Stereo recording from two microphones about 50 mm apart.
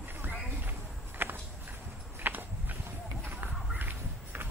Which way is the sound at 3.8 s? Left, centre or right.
Right.